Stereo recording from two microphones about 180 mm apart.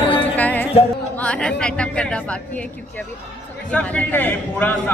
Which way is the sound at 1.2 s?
5° left (ahead or behind).